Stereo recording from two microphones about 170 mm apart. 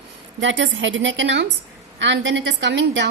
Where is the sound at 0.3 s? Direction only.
90° right.